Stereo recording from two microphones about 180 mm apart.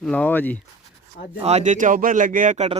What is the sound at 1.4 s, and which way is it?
Speech, 35° right (ahead or behind).